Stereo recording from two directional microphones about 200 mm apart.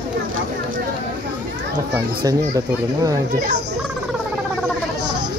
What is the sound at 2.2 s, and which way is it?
Speech, 15° right (ahead or behind).